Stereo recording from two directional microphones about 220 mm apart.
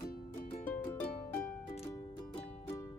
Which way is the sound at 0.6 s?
10° left (ahead or behind).